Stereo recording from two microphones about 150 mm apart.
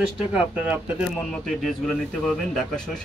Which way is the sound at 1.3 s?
5° left (ahead or behind).